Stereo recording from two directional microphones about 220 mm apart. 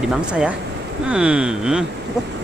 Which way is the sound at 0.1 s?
5° right (ahead or behind).